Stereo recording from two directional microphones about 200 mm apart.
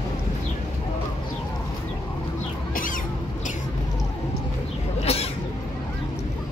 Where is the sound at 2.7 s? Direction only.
40° left (ahead or behind).